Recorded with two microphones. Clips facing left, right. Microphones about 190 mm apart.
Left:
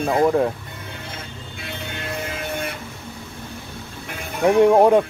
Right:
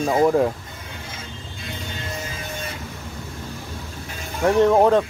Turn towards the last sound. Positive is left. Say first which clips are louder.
# left 2 dB
turn(degrees=10)  # may be behind; listen again after turning